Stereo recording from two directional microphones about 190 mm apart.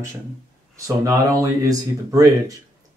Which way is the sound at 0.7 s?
15° right (ahead or behind).